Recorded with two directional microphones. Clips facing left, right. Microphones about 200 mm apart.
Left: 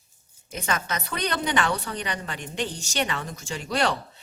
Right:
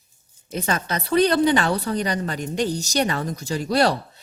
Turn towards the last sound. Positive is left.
turn(degrees=-35)  # may be behind; listen again after turning